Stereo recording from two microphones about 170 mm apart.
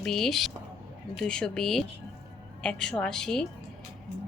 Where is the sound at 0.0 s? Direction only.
Centre (ahead or behind).